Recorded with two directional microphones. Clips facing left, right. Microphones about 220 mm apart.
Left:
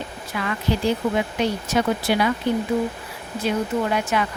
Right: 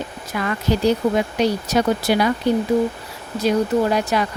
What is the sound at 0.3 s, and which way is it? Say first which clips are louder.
Speech: right 3 dB; 40° right (ahead or behind).